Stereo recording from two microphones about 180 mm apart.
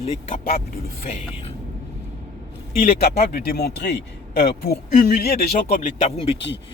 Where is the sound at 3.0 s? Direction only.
60° left (ahead or behind).